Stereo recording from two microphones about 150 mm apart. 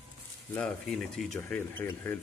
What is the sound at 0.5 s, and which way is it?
Speech, 5° left (ahead or behind).